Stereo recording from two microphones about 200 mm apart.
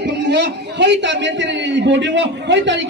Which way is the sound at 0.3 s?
60° right (ahead or behind).